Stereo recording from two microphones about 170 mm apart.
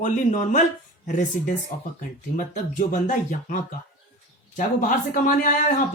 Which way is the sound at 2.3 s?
50° left (ahead or behind).